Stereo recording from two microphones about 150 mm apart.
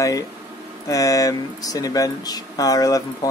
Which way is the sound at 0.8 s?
20° left (ahead or behind).